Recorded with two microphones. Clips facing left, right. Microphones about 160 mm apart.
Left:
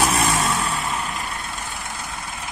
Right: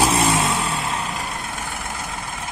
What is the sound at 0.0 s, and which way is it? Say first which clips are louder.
Vehicle: right 2 dB; 30° right (ahead or behind).